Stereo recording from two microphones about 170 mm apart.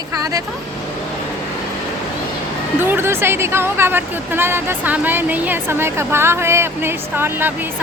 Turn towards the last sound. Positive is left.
turn(degrees=-15)  # may be behind; listen again after turning